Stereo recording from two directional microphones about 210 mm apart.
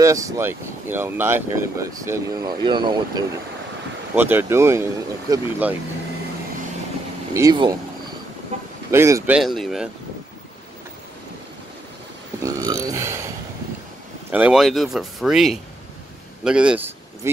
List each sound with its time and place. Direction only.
0.0 s speech: 15° right (ahead or behind)
4.1 s speech: 10° right (ahead or behind)
7.3 s speech: 20° right (ahead or behind)
8.9 s speech: 15° right (ahead or behind)
12.4 s a sound: 15° right (ahead or behind)
14.3 s speech: 5° right (ahead or behind)